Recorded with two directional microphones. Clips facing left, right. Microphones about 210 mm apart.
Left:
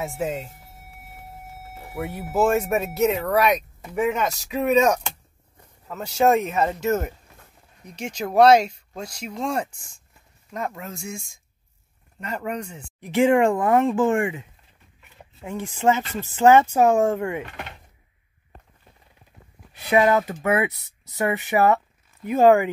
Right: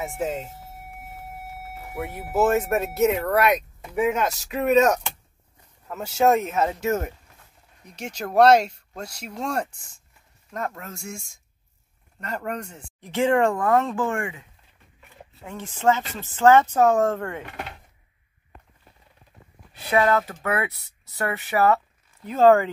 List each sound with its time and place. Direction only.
0.0 s speech: centre (ahead or behind)
2.0 s speech: centre (ahead or behind)
9.4 s speech: 5° left (ahead or behind)
12.2 s speech: 5° left (ahead or behind); by 14.4 s 20° left (ahead or behind)
15.4 s speech: 15° left (ahead or behind)
19.9 s speech: 15° left (ahead or behind)